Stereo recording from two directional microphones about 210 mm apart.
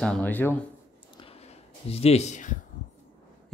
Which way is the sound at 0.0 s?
5° left (ahead or behind).